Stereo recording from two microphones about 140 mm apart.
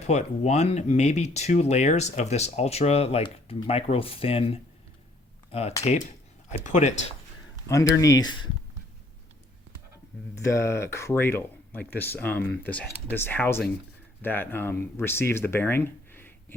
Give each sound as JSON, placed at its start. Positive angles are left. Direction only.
{"t": 0.1, "sound": "speech", "side_deg": 55}
{"t": 3.2, "sound": "speech", "side_deg": 30}
{"t": 3.7, "sound": "speech", "side_deg": 45}
{"t": 6.7, "sound": "speech", "side_deg": 60}
{"t": 7.7, "sound": "speech", "side_deg": 25}
{"t": 10.3, "sound": "speech", "side_deg": 20}